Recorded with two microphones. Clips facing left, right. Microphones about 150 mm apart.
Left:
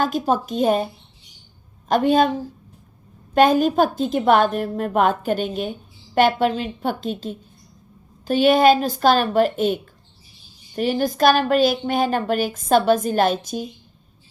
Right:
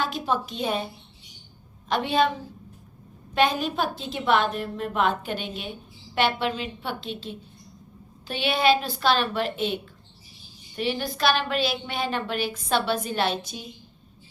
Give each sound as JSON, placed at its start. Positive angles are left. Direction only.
{"t": 0.0, "sound": "a woman's voice", "side_deg": 45}
{"t": 1.9, "sound": "a woman's voice", "side_deg": 45}
{"t": 3.3, "sound": "a woman's voice", "side_deg": 45}